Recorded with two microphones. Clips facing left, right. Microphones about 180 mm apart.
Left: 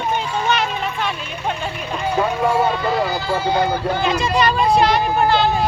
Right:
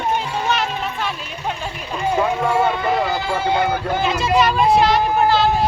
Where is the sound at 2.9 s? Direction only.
20° right (ahead or behind).